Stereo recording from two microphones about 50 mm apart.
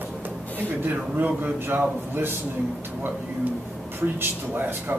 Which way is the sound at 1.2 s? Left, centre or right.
Right.